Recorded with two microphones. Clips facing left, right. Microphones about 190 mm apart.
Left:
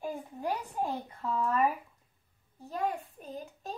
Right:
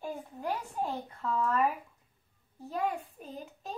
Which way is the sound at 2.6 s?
Centre (ahead or behind).